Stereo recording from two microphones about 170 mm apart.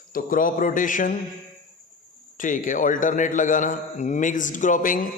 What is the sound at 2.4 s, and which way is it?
A man's voice, 50° left (ahead or behind).